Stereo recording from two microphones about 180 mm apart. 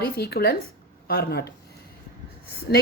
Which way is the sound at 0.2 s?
60° left (ahead or behind).